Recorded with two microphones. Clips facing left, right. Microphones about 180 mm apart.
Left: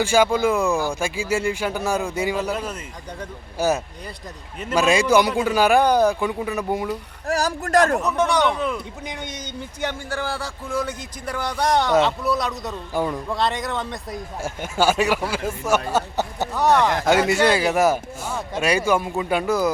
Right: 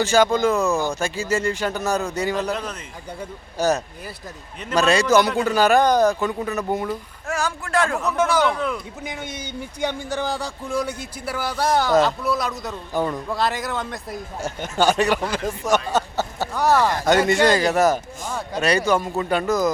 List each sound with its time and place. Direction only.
0.0 s speech: 10° left (ahead or behind)
4.6 s speech: 10° left (ahead or behind)
7.3 s a man's voice: 35° left (ahead or behind)
8.0 s speech: centre (ahead or behind)
12.9 s speech: 10° left (ahead or behind)
13.1 s speech: centre (ahead or behind)
16.6 s speech: centre (ahead or behind)